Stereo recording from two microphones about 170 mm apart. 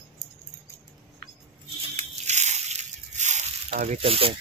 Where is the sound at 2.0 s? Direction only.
45° right (ahead or behind).